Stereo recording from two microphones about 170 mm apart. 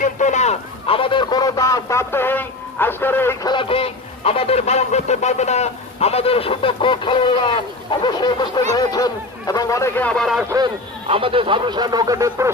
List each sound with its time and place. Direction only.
0.0 s a man's voice: 45° left (ahead or behind); by 3.5 s 15° left (ahead or behind)
3.5 s speech: 30° left (ahead or behind)
8.0 s a sound: 25° left (ahead or behind)
8.7 s speech: 20° left (ahead or behind); by 10.4 s centre (ahead or behind)
11.1 s speech: 30° right (ahead or behind)